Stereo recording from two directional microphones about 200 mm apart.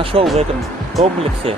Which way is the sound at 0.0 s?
25° right (ahead or behind).